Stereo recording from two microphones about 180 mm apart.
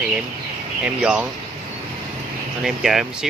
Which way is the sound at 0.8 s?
5° right (ahead or behind).